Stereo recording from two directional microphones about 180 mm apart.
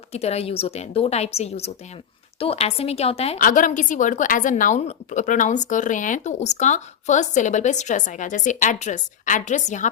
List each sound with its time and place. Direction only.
0.1 s a woman's voice: 35° left (ahead or behind)
3.3 s a woman's voice: 50° left (ahead or behind)